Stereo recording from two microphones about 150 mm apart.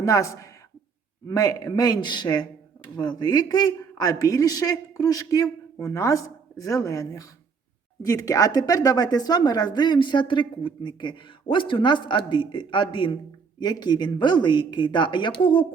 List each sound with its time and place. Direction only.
0.0 s a woman's voice: 20° left (ahead or behind)